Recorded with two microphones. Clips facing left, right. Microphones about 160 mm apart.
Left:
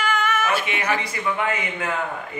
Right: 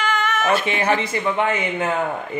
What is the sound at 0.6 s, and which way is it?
A man's voice, 30° right (ahead or behind).